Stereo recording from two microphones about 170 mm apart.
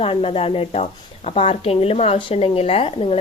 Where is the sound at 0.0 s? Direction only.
35° left (ahead or behind).